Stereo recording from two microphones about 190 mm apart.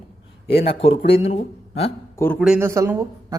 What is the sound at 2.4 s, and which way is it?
Speech, 5° right (ahead or behind).